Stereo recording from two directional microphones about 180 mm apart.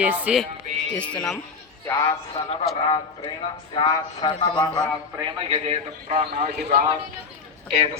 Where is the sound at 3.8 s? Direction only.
25° left (ahead or behind).